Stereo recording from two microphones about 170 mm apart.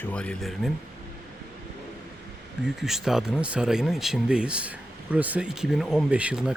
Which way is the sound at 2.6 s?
Centre (ahead or behind).